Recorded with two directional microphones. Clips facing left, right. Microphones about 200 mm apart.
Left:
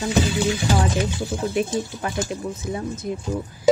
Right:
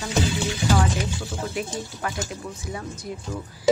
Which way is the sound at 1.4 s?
25° left (ahead or behind).